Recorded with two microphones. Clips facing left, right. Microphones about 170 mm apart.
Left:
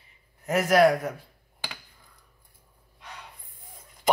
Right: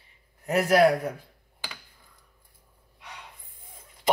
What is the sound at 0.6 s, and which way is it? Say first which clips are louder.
Speech: even; 30° right (ahead or behind).